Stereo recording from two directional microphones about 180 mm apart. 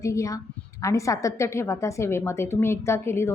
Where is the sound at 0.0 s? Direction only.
15° left (ahead or behind).